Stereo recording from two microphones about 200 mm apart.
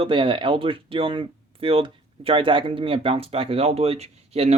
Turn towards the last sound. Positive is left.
turn(degrees=-30)  # may be behind; listen again after turning